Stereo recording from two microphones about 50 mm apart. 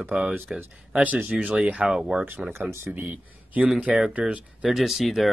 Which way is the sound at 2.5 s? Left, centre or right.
Right.